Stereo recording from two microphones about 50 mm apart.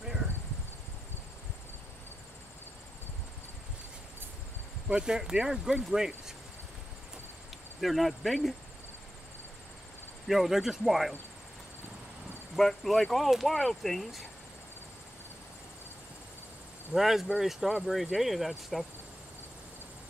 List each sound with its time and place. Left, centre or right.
0.0 s a sound: centre
4.8 s speech: centre
7.8 s speech: centre
10.2 s speech: centre
12.5 s speech: centre
16.9 s speech: centre